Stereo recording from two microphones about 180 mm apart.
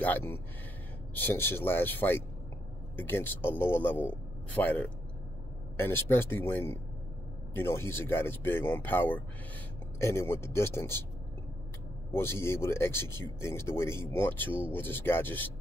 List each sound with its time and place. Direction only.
0.0 s speech: 10° left (ahead or behind)
12.1 s speech: 15° left (ahead or behind)